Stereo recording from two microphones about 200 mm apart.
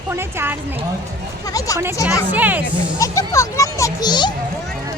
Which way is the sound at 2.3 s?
10° right (ahead or behind).